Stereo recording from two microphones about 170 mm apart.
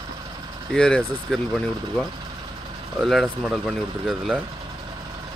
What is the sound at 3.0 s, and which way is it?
Speech, centre (ahead or behind).